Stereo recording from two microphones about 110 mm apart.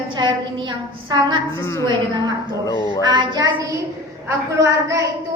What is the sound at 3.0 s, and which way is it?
A woman's voice, 40° right (ahead or behind).